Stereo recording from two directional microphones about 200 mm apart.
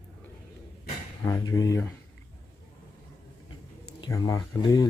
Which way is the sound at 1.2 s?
15° left (ahead or behind).